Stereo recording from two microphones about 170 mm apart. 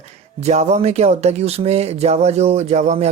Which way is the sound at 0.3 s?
40° right (ahead or behind).